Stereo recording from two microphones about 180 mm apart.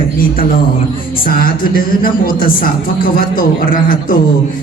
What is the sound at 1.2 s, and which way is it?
A man's voice, 55° left (ahead or behind).